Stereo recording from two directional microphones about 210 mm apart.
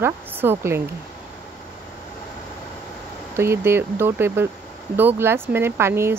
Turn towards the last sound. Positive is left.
turn(degrees=-10)  # may be behind; listen again after turning